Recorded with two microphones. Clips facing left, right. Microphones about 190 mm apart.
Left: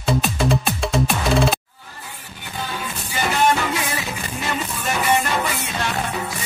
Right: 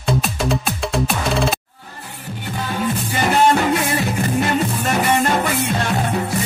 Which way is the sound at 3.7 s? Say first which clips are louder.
Right 7 dB; 55° right (ahead or behind).